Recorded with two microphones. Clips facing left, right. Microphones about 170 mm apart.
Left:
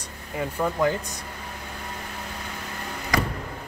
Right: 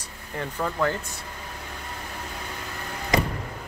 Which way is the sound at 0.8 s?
15° left (ahead or behind).